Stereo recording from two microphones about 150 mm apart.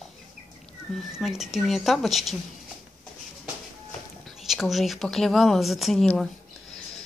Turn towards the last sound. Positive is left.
turn(degrees=0)  # may be behind; listen again after turning